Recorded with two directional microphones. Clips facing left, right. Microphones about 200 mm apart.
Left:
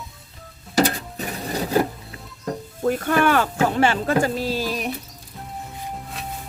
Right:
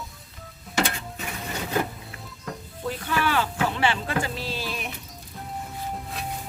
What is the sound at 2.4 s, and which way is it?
Speech, 45° left (ahead or behind).